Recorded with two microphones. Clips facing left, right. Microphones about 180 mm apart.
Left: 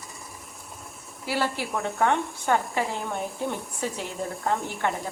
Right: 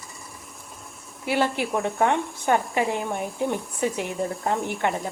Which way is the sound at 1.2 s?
20° right (ahead or behind).